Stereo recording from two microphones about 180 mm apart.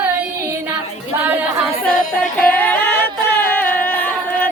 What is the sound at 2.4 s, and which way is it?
Singing, 10° left (ahead or behind).